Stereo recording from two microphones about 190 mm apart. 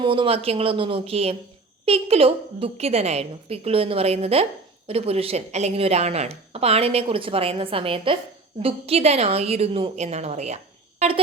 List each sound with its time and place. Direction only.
0.0 s a woman's voice: 25° right (ahead or behind)